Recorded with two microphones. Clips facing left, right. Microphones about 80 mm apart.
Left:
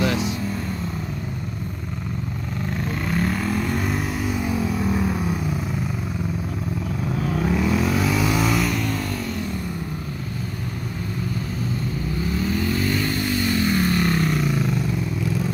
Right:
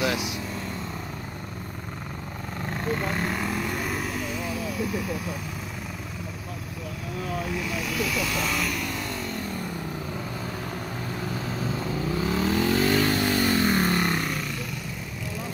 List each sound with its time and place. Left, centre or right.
0.0 s vehicle: centre
3.1 s vehicle: centre
7.6 s vehicle: left
8.3 s vehicle: centre
12.3 s vehicle: right
13.6 s vehicle: right
13.8 s vehicle: right
14.1 s a sound: centre